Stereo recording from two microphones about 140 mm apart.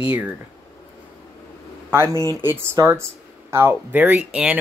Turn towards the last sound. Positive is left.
turn(degrees=-10)  # may be behind; listen again after turning